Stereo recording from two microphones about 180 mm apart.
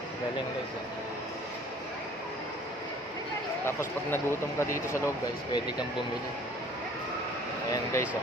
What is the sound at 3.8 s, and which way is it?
Speech, 15° left (ahead or behind).